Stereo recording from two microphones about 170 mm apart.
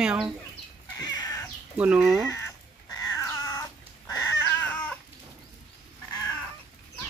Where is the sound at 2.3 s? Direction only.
20° left (ahead or behind).